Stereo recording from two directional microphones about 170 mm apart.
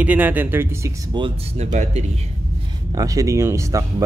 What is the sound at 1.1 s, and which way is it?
Speech, 35° right (ahead or behind).